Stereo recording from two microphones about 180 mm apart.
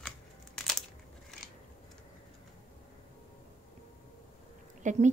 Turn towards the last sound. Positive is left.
turn(degrees=-40)  # may be behind; listen again after turning